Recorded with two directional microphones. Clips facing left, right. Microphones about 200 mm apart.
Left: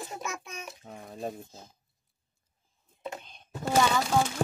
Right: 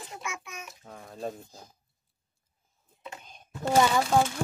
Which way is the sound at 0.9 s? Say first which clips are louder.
Right 1 dB; 15° left (ahead or behind).